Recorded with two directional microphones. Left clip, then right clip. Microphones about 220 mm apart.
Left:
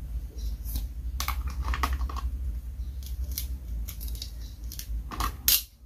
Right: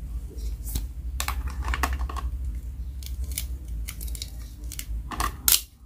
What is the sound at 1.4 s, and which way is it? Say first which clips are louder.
Typing: right 3 dB; 10° right (ahead or behind).